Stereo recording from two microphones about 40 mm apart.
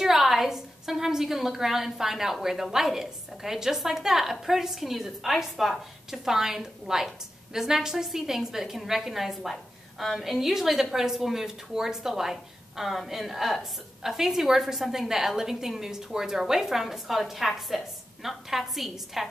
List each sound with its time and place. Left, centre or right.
0.0 s a woman's voice: centre